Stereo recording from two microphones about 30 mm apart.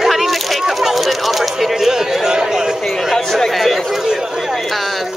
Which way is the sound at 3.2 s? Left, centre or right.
Centre.